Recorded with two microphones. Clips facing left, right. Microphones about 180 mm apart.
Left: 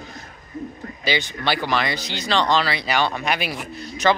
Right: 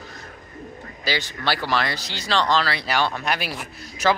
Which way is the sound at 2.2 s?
5° right (ahead or behind).